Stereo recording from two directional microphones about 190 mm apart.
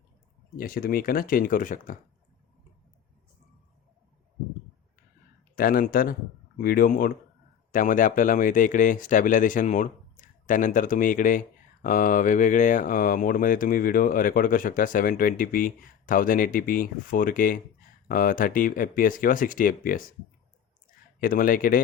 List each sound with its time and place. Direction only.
0.5 s speech: 50° left (ahead or behind)
5.5 s speech: 50° left (ahead or behind)
21.2 s speech: 50° left (ahead or behind)